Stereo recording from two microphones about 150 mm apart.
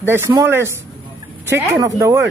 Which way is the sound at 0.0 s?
15° right (ahead or behind).